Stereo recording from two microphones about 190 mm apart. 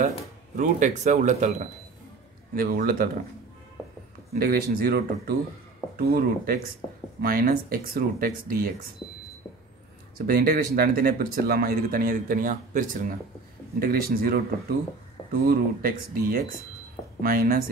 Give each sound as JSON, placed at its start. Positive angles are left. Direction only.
{"t": 0.6, "sound": "speech", "side_deg": -40}
{"t": 4.3, "sound": "speech", "side_deg": -50}
{"t": 10.1, "sound": "speech", "side_deg": -50}
{"t": 15.4, "sound": "speech", "side_deg": -50}